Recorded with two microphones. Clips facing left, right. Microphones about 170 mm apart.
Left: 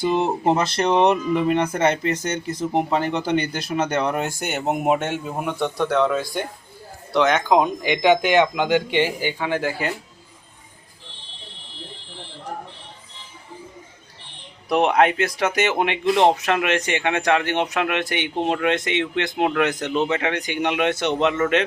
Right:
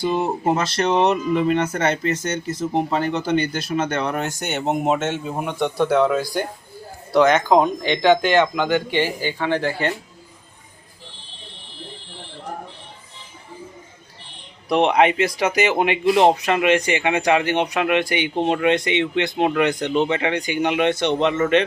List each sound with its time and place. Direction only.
0.1 s speech: 20° left (ahead or behind); by 7.6 s centre (ahead or behind)
7.6 s speech: 10° left (ahead or behind)
14.7 s speech: 5° left (ahead or behind)